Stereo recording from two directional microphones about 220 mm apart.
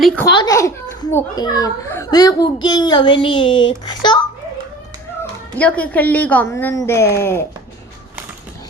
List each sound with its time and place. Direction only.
0.3 s a child's voice: 15° left (ahead or behind)
5.5 s a woman's voice: 5° left (ahead or behind)